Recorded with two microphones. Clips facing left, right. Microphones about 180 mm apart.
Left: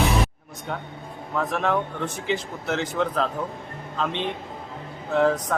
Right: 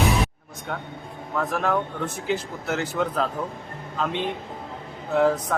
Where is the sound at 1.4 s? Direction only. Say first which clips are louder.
Even; centre (ahead or behind).